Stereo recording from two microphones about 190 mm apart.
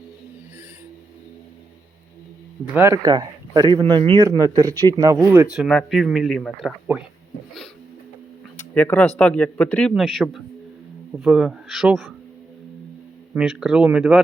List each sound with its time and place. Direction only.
2.7 s speech: 15° right (ahead or behind); by 6.7 s centre (ahead or behind)
8.7 s speech: 10° left (ahead or behind)
13.3 s speech: 5° right (ahead or behind)